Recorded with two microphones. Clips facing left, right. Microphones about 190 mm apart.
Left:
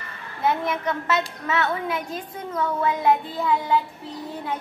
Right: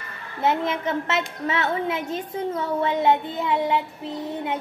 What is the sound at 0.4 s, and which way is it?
Child singing, 25° right (ahead or behind).